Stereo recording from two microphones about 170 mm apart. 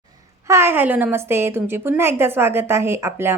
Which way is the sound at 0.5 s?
15° right (ahead or behind).